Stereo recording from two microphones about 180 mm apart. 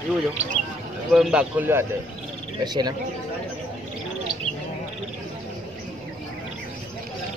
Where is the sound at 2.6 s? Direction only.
25° right (ahead or behind).